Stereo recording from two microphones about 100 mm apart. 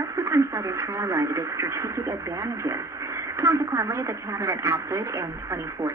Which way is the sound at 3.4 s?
30° right (ahead or behind).